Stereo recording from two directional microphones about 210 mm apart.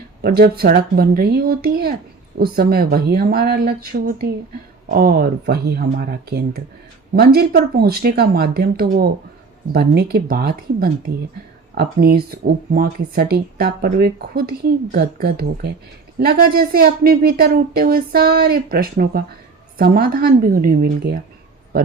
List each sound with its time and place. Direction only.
0.2 s speech: 45° right (ahead or behind)